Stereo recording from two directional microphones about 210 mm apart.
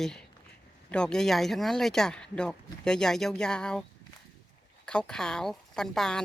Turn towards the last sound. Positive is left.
turn(degrees=0)  # may be behind; listen again after turning